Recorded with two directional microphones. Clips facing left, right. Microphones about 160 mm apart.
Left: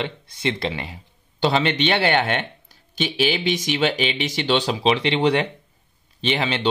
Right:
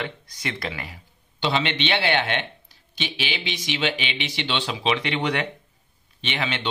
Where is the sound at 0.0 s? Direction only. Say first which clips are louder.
Left 6 dB; 25° left (ahead or behind).